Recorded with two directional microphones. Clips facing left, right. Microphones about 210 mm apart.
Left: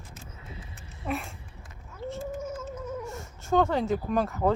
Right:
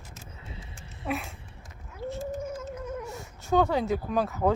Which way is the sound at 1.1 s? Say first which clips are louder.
Even; centre (ahead or behind).